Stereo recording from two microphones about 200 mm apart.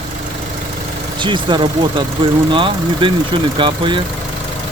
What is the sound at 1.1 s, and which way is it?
Speech, 25° right (ahead or behind).